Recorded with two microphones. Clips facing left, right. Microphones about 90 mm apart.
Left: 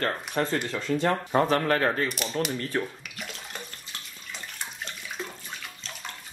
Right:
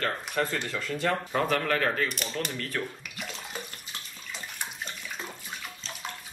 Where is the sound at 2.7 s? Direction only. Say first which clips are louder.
Left 4 dB; 25° left (ahead or behind).